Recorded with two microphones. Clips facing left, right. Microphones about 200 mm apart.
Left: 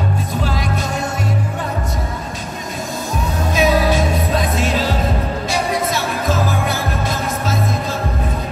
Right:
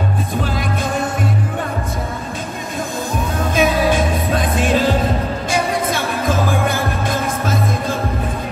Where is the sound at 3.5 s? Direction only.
50° right (ahead or behind).